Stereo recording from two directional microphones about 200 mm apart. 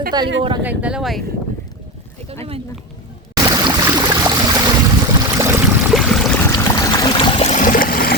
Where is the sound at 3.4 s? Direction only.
15° right (ahead or behind).